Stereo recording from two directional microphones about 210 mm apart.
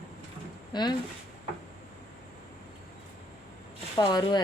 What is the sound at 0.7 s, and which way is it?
Speech, 20° left (ahead or behind).